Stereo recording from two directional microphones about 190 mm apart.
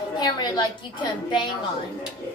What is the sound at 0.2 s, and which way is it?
A woman's voice, 20° left (ahead or behind).